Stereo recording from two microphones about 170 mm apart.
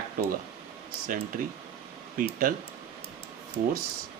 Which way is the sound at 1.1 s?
55° right (ahead or behind).